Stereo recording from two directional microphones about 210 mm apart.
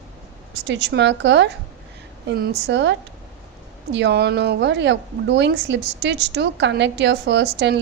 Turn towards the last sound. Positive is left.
turn(degrees=-55)  # may be behind; listen again after turning